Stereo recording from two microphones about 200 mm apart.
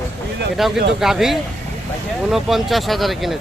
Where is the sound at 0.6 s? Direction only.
Centre (ahead or behind).